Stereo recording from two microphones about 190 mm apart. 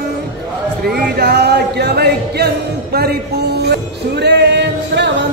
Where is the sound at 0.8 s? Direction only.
60° right (ahead or behind).